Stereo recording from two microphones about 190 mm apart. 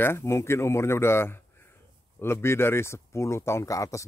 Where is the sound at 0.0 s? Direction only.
15° left (ahead or behind).